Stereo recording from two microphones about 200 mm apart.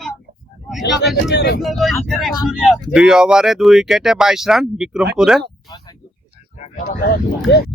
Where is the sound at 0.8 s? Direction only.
60° left (ahead or behind).